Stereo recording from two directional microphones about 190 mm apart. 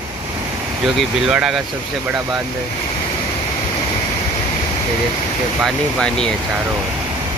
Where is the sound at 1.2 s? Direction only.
5° right (ahead or behind).